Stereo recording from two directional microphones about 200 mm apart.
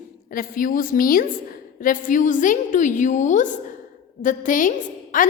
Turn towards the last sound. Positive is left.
turn(degrees=40)  # may be behind; listen again after turning